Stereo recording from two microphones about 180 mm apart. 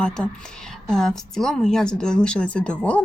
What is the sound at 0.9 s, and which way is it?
A woman's voice, 5° left (ahead or behind).